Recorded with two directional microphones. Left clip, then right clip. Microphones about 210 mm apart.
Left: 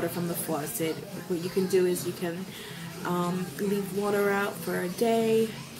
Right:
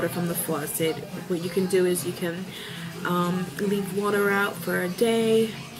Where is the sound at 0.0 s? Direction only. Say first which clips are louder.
Right 3 dB; centre (ahead or behind).